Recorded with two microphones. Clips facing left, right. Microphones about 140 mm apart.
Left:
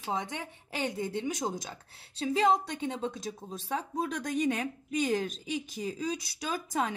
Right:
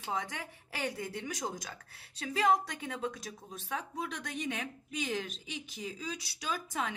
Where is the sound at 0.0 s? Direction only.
25° left (ahead or behind).